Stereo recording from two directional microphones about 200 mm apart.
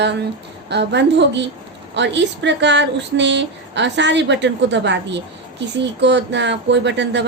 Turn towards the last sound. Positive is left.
turn(degrees=-60)  # may be behind; listen again after turning